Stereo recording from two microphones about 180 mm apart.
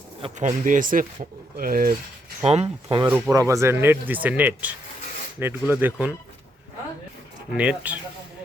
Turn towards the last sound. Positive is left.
turn(degrees=-5)  # may be behind; listen again after turning